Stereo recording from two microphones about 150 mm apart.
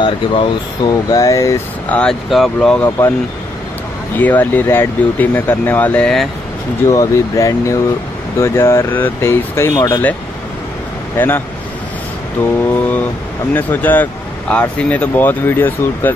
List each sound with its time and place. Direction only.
0.0 s speech: 35° left (ahead or behind)
2.0 s speech: centre (ahead or behind)
4.2 s speech: 10° left (ahead or behind)
6.9 s speech: 20° left (ahead or behind)
11.1 s speech: 15° left (ahead or behind)
13.6 s speech: 10° left (ahead or behind)